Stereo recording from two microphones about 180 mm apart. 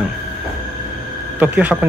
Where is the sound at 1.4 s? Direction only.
10° right (ahead or behind).